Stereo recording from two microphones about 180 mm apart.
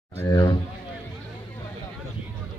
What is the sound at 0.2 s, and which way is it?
Speech, 20° left (ahead or behind).